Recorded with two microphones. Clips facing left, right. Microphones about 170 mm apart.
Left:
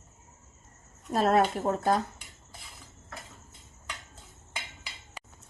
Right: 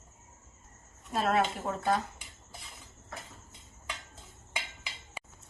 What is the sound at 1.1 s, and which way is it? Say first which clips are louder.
Speech: left 5 dB; 40° left (ahead or behind).